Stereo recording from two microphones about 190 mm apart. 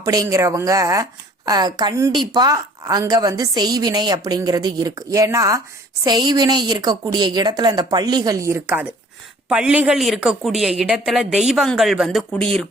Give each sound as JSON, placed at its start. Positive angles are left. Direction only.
{"t": 0.0, "sound": "a woman's voice", "side_deg": -20}